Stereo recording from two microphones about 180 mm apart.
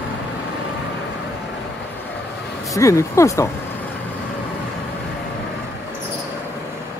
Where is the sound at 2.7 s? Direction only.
15° left (ahead or behind).